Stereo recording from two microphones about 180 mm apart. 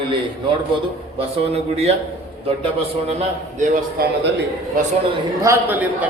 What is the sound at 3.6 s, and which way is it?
Speech, 60° right (ahead or behind).